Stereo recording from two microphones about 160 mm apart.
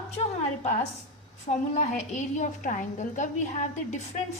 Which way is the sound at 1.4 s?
45° left (ahead or behind).